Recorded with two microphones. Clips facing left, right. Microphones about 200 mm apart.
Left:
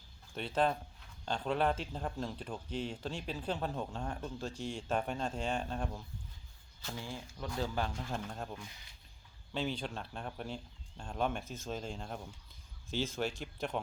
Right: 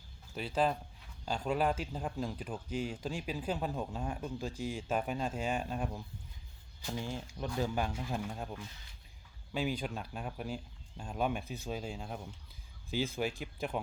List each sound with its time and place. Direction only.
0.3 s speech: 5° right (ahead or behind)
6.8 s speech: 20° right (ahead or behind)